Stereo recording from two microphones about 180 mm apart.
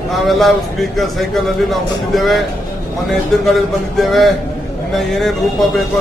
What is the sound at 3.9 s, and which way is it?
Speech, centre (ahead or behind).